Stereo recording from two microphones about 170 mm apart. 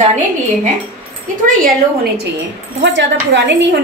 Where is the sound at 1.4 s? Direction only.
60° right (ahead or behind).